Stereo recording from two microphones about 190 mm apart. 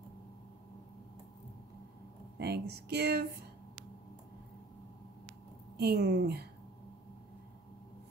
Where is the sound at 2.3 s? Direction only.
60° right (ahead or behind).